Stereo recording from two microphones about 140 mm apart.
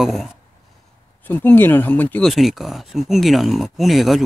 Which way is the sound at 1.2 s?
15° left (ahead or behind).